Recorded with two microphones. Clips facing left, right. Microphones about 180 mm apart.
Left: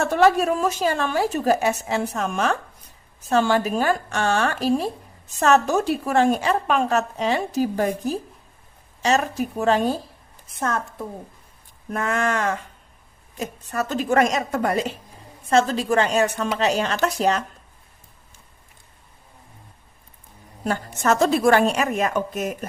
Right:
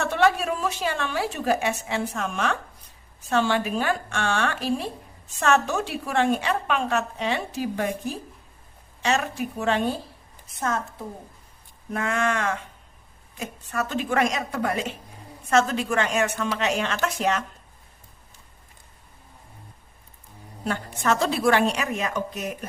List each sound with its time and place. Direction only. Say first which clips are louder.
0.0 s a woman's voice: left 4 dB; 40° left (ahead or behind)
11.9 s a woman's voice: left 2 dB; 40° left (ahead or behind)
20.7 s a woman's voice: left 3 dB; 45° left (ahead or behind)